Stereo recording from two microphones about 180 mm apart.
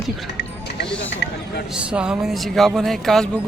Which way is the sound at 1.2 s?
75° left (ahead or behind).